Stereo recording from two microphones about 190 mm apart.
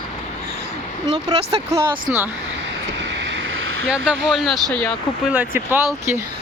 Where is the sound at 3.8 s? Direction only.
5° right (ahead or behind).